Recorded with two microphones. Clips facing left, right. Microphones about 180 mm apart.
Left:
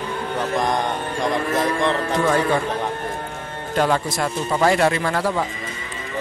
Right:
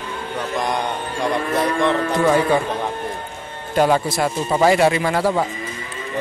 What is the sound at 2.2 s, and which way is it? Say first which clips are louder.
Speech: right 3 dB; 15° right (ahead or behind).